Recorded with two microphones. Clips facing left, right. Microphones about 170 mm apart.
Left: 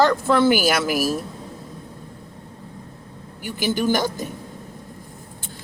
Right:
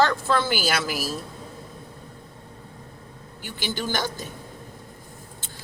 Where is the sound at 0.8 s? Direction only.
55° left (ahead or behind).